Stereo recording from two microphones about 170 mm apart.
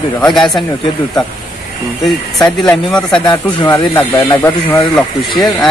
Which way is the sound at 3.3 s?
25° left (ahead or behind).